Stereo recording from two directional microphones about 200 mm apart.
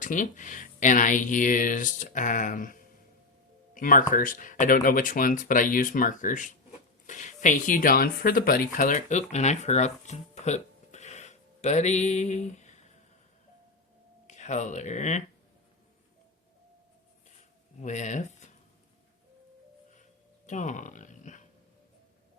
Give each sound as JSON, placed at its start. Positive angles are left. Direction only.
{"t": 0.0, "sound": "speech", "side_deg": 40}
{"t": 14.3, "sound": "speech", "side_deg": 35}
{"t": 17.7, "sound": "speech", "side_deg": 35}
{"t": 20.5, "sound": "speech", "side_deg": 40}